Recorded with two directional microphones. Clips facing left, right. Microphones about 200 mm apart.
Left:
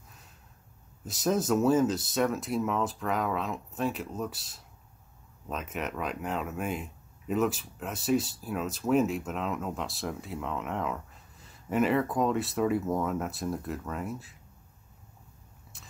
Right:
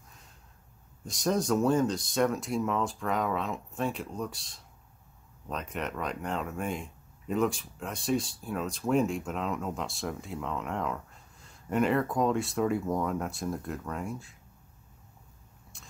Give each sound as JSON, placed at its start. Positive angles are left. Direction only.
{"t": 1.0, "sound": "speech", "side_deg": 5}
{"t": 15.7, "sound": "biting", "side_deg": 5}